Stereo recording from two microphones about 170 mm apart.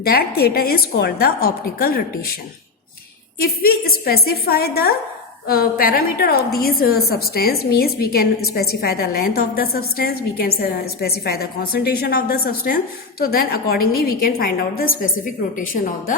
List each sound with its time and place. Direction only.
0.0 s a woman's voice: 65° left (ahead or behind)
3.3 s a woman's voice: 60° left (ahead or behind)